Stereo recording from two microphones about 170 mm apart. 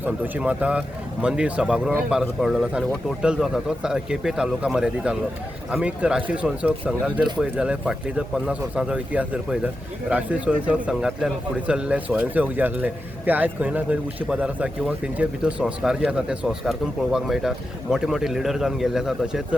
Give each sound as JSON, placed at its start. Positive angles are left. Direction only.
{"t": 0.0, "sound": "speech", "side_deg": -10}